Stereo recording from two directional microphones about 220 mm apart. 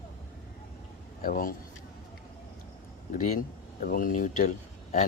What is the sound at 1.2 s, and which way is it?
Speech, 40° left (ahead or behind).